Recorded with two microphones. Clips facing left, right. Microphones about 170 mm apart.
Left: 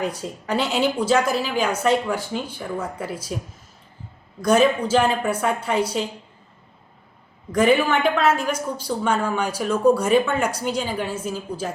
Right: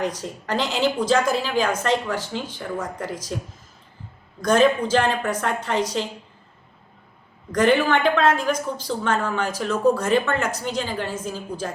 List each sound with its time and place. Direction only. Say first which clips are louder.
0.2 s a woman's voice: left 1 dB; 10° left (ahead or behind)
4.4 s a woman's voice: even; 5° left (ahead or behind)
7.5 s a woman's voice: even; 5° left (ahead or behind)